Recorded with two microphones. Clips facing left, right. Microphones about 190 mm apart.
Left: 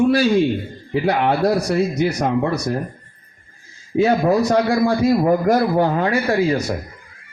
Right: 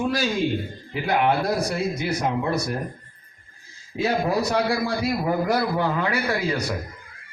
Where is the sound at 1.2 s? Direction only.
60° left (ahead or behind).